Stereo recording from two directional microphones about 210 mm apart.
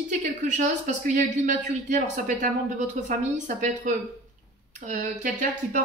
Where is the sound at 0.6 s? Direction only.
35° right (ahead or behind).